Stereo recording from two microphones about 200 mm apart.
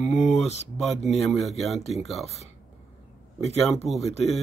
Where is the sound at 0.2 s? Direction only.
35° left (ahead or behind).